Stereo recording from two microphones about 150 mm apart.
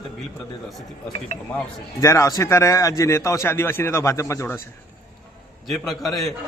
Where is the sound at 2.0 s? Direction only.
20° left (ahead or behind).